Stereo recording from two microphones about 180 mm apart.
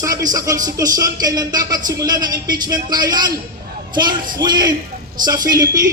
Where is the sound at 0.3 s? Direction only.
20° right (ahead or behind).